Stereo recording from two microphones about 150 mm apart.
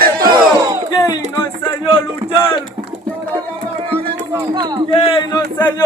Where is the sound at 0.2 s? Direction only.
25° right (ahead or behind).